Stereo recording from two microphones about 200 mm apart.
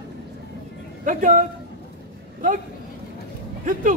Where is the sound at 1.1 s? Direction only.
40° right (ahead or behind).